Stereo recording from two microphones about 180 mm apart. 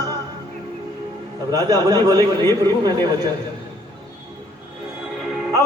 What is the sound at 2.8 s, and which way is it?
Speech, 20° right (ahead or behind).